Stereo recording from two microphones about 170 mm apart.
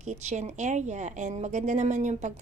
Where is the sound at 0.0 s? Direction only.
45° right (ahead or behind).